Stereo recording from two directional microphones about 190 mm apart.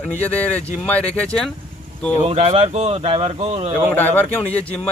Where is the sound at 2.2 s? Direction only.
35° right (ahead or behind).